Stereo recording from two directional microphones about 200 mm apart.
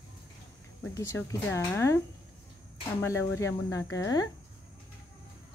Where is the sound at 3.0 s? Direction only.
15° left (ahead or behind).